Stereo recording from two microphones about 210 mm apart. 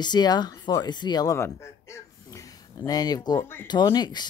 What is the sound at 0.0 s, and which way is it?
Speech, 20° left (ahead or behind).